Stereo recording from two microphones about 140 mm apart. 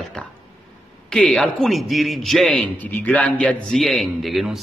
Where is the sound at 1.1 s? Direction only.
5° left (ahead or behind).